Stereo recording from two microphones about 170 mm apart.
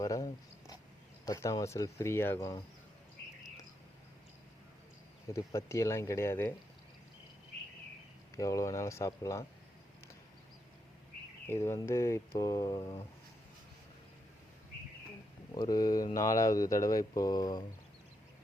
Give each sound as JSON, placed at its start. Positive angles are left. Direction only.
{"t": 0.0, "sound": "a sound", "side_deg": 20}
{"t": 1.2, "sound": "mantra", "side_deg": 20}
{"t": 5.3, "sound": "mantra", "side_deg": 20}
{"t": 8.4, "sound": "mantra", "side_deg": 20}
{"t": 11.4, "sound": "mantra", "side_deg": 15}
{"t": 15.5, "sound": "speech", "side_deg": 25}